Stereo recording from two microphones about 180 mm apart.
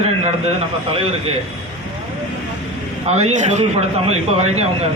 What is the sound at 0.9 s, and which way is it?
Speech, 30° right (ahead or behind).